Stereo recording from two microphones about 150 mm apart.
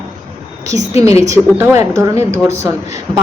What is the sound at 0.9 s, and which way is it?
Speech, 45° left (ahead or behind).